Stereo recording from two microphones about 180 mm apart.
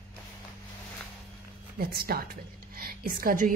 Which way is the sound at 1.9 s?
55° right (ahead or behind).